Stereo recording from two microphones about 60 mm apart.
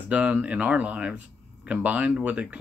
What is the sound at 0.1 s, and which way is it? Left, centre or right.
Speech, right.